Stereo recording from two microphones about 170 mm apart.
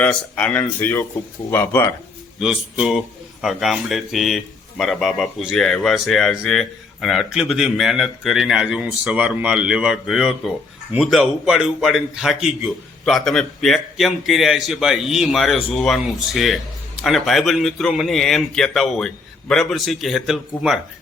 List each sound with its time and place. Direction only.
0.0 s speech: 5° left (ahead or behind)
2.4 s a man's voice: 5° right (ahead or behind)